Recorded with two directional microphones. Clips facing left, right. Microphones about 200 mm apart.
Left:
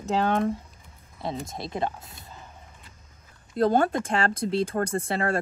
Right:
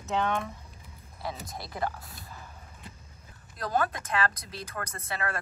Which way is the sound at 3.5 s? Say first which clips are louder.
Left 8 dB; 30° left (ahead or behind).